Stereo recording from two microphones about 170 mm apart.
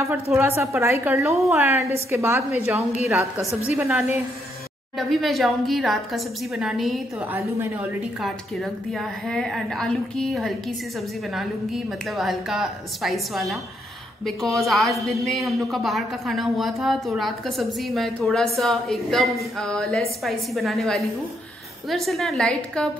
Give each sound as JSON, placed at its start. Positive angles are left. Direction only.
{"t": 0.0, "sound": "a woman's voice", "side_deg": -15}
{"t": 1.3, "sound": "a woman's voice", "side_deg": 0}
{"t": 1.7, "sound": "a woman's voice", "side_deg": -15}